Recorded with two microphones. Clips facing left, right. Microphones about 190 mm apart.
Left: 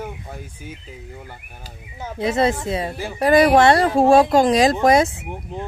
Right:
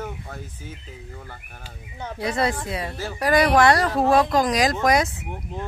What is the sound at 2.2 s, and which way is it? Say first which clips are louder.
Speech: left 5 dB; 25° left (ahead or behind).